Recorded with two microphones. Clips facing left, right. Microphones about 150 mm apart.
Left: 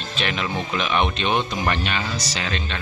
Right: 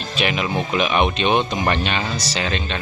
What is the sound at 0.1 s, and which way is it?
Speech, 10° right (ahead or behind).